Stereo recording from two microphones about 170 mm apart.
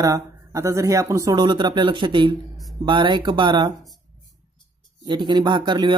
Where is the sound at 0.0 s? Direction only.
20° right (ahead or behind).